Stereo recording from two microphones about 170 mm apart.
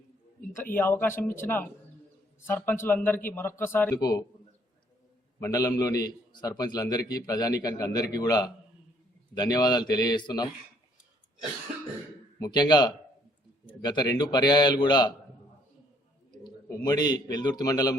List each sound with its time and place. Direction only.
0.5 s speech: 10° left (ahead or behind)
3.9 s a man's voice: 20° left (ahead or behind)
5.4 s a man's voice: 20° left (ahead or behind)
12.4 s a man's voice: 25° left (ahead or behind)
16.4 s a man's voice: 25° left (ahead or behind)